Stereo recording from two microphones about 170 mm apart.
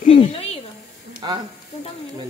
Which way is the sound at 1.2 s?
25° right (ahead or behind).